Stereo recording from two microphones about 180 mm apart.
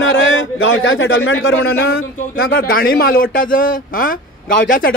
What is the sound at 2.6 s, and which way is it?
A man's voice, 55° left (ahead or behind).